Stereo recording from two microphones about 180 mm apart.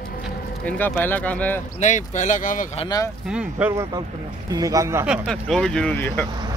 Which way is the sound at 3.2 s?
5° right (ahead or behind).